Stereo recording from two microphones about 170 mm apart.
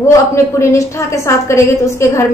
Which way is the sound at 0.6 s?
15° left (ahead or behind).